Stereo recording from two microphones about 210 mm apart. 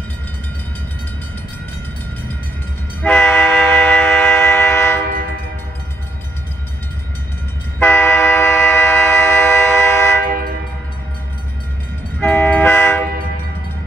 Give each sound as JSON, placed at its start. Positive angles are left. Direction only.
{"t": 3.0, "sound": "train", "side_deg": 10}
{"t": 7.8, "sound": "train", "side_deg": 10}
{"t": 10.2, "sound": "train", "side_deg": -45}
{"t": 12.2, "sound": "train", "side_deg": 10}